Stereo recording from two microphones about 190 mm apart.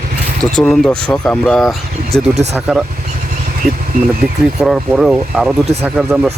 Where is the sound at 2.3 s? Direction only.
35° right (ahead or behind).